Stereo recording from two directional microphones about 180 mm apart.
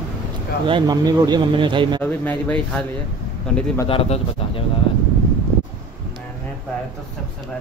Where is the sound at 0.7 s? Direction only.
25° right (ahead or behind).